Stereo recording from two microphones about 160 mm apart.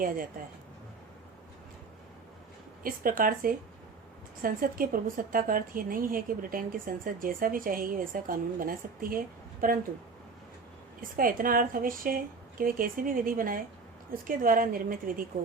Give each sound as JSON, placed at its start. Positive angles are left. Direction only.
{"t": 2.8, "sound": "a woman's voice", "side_deg": -60}
{"t": 11.0, "sound": "a woman's voice", "side_deg": -60}